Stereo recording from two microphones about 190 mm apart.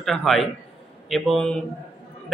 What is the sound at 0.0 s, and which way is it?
A man's voice, centre (ahead or behind).